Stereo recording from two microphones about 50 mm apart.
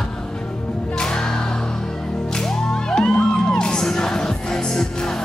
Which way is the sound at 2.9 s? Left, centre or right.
Centre.